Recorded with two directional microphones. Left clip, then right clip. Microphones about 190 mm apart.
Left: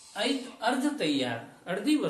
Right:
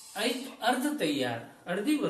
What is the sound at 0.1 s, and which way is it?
Speech, 35° left (ahead or behind).